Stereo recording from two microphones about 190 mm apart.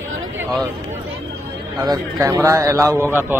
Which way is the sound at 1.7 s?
20° right (ahead or behind).